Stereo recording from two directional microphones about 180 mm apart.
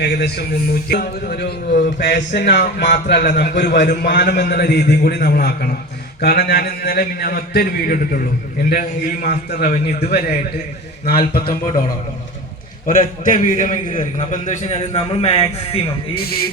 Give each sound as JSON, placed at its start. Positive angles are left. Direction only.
{"t": 0.0, "sound": "a man's voice", "side_deg": 65}
{"t": 8.7, "sound": "a man's voice", "side_deg": 45}
{"t": 10.0, "sound": "a man's voice", "side_deg": 60}
{"t": 12.8, "sound": "a man's voice", "side_deg": 45}
{"t": 16.1, "sound": "a man's voice", "side_deg": 60}